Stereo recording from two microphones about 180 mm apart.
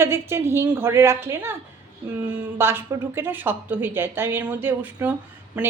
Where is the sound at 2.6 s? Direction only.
15° right (ahead or behind).